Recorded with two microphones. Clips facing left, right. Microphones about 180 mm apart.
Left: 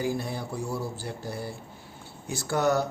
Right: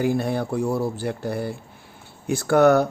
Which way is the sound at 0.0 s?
65° right (ahead or behind).